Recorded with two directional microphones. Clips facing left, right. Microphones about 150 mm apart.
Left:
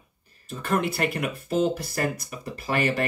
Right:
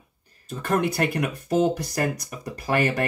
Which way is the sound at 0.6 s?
45° right (ahead or behind).